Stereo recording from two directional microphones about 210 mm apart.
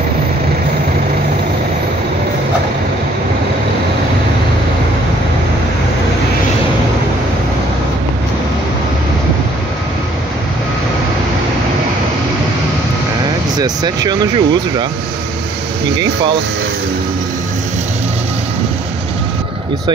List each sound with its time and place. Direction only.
13.6 s speech: 20° right (ahead or behind)